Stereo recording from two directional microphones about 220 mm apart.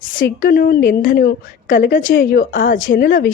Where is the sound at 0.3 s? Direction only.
40° left (ahead or behind).